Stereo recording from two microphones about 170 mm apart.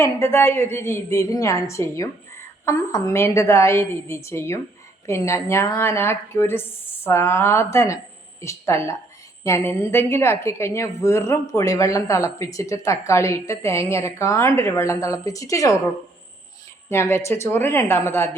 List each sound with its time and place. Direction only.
0.0 s a woman's voice: 15° left (ahead or behind)
16.9 s a woman's voice: 15° left (ahead or behind)